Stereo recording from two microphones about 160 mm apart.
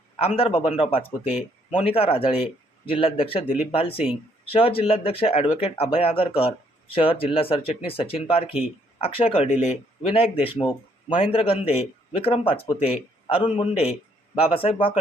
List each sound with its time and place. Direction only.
0.2 s a man's voice: 35° left (ahead or behind)